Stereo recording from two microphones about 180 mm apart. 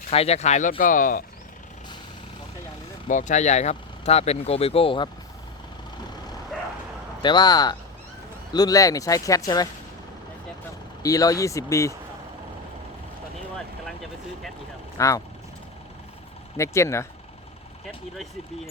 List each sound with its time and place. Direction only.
0.1 s speech: 35° left (ahead or behind)
3.1 s speech: 45° left (ahead or behind)
7.2 s speech: 25° left (ahead or behind)
11.0 s speech: 20° left (ahead or behind)
13.8 s speech: centre (ahead or behind)
14.9 s speech: 20° left (ahead or behind)
16.6 s speech: 15° left (ahead or behind)
17.8 s speech: centre (ahead or behind)